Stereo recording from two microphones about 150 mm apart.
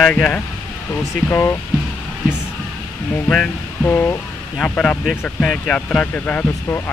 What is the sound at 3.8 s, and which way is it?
Speech, 15° left (ahead or behind).